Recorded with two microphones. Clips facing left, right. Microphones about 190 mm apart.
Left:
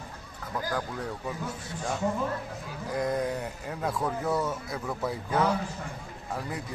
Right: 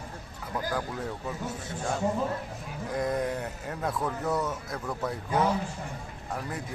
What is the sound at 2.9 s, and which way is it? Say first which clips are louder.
Speech: even; centre (ahead or behind).